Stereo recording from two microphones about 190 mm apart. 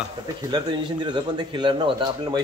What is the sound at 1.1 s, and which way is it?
Speech, 25° right (ahead or behind).